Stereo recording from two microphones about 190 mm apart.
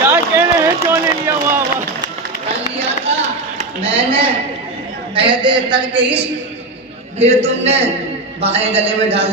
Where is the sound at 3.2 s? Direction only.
30° right (ahead or behind).